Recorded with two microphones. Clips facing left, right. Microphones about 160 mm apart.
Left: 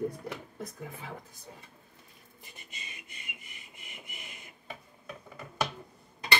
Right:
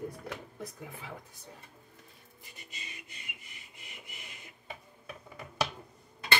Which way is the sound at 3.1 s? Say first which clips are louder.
Left 1 dB; 20° left (ahead or behind).